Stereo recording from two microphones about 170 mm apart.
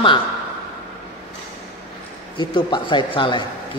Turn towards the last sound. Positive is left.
turn(degrees=30)  # may be behind; listen again after turning